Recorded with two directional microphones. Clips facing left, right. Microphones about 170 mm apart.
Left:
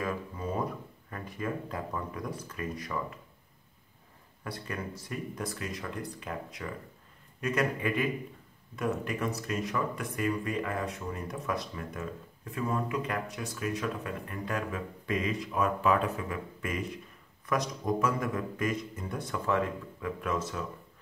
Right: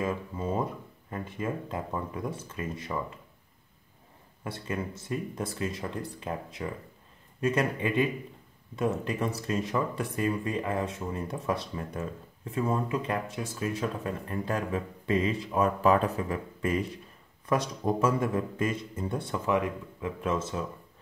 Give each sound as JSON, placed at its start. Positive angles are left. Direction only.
{"t": 0.0, "sound": "a sound", "side_deg": -25}
{"t": 1.1, "sound": "speech", "side_deg": -25}
{"t": 4.5, "sound": "speech", "side_deg": -25}